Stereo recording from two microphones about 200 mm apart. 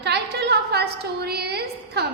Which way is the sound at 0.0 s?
55° right (ahead or behind).